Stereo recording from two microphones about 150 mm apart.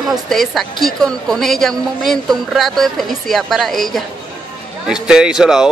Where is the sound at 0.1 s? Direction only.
Centre (ahead or behind).